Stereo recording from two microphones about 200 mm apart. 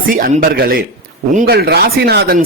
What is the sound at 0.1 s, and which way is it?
Speech, 45° right (ahead or behind).